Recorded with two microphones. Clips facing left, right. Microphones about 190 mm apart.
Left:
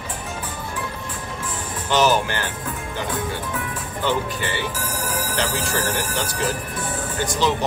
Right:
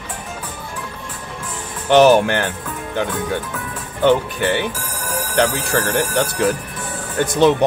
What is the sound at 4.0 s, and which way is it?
Speech, 60° right (ahead or behind).